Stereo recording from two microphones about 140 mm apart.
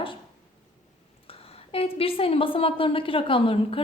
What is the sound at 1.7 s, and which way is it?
A woman's voice, 45° left (ahead or behind).